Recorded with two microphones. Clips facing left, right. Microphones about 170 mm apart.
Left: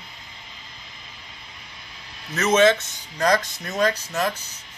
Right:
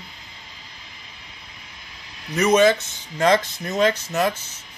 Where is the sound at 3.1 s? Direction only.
25° right (ahead or behind).